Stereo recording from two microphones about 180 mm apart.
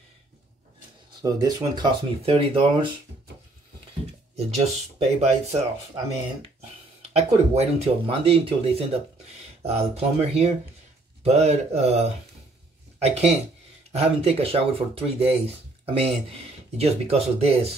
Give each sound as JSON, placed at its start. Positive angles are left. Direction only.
{"t": 1.2, "sound": "speech", "side_deg": -20}
{"t": 4.4, "sound": "speech", "side_deg": -35}
{"t": 7.0, "sound": "speech", "side_deg": -35}